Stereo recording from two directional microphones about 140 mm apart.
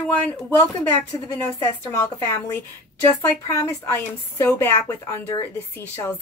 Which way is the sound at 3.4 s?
25° left (ahead or behind).